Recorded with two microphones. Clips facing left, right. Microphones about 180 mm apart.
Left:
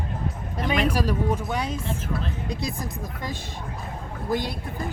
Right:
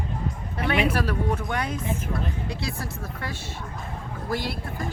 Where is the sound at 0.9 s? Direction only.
15° left (ahead or behind).